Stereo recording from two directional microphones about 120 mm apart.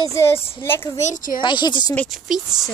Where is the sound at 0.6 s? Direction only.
20° left (ahead or behind).